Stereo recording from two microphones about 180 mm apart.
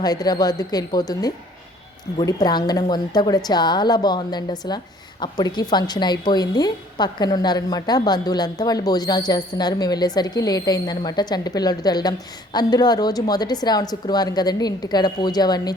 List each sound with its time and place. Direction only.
0.0 s a woman's voice: 20° left (ahead or behind)